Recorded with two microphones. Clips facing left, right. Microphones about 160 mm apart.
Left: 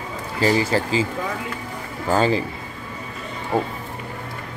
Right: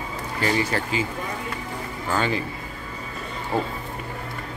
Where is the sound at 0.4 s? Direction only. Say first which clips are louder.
Left 5 dB; 30° left (ahead or behind).